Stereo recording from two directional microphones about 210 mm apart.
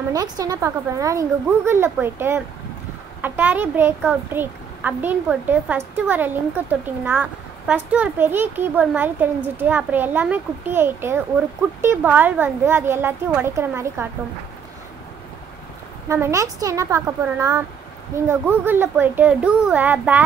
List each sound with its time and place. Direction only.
0.1 s a child's voice: 15° right (ahead or behind)
16.1 s a child's voice: 15° right (ahead or behind)